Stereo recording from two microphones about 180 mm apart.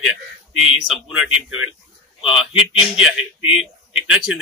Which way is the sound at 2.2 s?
30° left (ahead or behind).